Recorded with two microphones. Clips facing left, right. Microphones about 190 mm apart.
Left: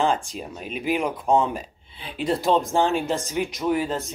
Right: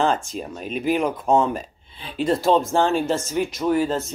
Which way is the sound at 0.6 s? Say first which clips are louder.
Right 4 dB; 45° right (ahead or behind).